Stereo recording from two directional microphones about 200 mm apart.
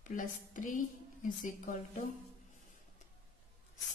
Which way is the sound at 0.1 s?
40° left (ahead or behind).